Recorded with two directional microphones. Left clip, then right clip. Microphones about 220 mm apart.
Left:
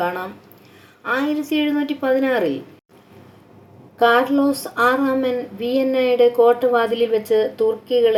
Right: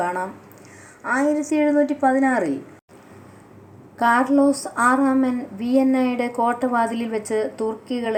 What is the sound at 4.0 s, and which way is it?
A woman's voice, 30° right (ahead or behind).